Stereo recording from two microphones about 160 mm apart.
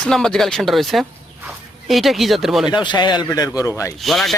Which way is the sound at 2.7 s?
30° left (ahead or behind).